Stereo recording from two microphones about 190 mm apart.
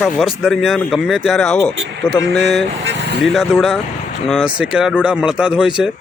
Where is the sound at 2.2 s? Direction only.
65° right (ahead or behind).